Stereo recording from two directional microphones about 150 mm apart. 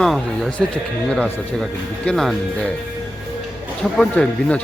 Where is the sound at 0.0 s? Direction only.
Centre (ahead or behind).